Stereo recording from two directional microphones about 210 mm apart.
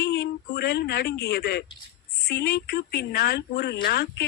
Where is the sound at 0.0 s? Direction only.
50° left (ahead or behind).